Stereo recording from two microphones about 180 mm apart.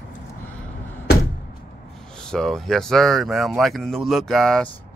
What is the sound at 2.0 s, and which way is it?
Speech, 5° left (ahead or behind).